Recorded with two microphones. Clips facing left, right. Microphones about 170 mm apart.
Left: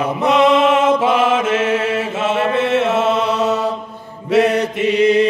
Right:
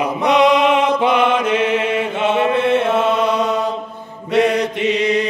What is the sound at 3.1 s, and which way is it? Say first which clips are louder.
Mantra: right 1 dB; 30° left (ahead or behind).